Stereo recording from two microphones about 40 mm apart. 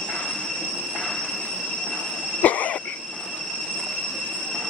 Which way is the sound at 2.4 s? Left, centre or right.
Left.